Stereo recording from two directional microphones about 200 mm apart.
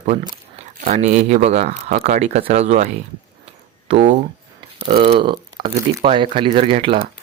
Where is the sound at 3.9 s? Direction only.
35° right (ahead or behind).